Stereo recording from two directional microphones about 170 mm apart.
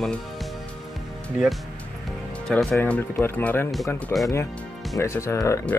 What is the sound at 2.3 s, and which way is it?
Music, 5° left (ahead or behind).